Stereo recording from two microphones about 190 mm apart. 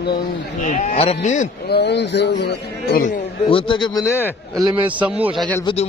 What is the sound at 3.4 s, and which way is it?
Speech, 25° left (ahead or behind).